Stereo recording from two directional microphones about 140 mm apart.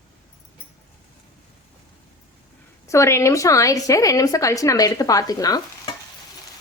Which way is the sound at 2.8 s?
20° left (ahead or behind).